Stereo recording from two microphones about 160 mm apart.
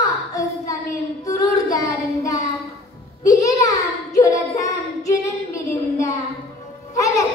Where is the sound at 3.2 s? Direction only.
20° left (ahead or behind).